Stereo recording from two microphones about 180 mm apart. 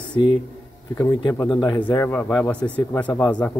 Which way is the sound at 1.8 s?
10° left (ahead or behind).